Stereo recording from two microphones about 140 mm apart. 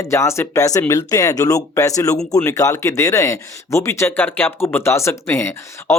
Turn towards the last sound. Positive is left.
turn(degrees=20)  # may be behind; listen again after turning